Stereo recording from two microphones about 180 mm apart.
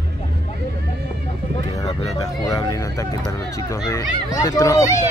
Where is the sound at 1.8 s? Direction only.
20° left (ahead or behind).